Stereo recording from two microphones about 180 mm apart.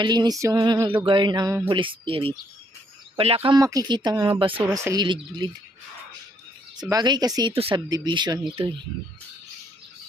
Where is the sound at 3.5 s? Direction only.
20° right (ahead or behind).